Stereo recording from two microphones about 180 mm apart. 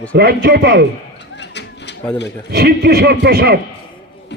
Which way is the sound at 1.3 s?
75° left (ahead or behind).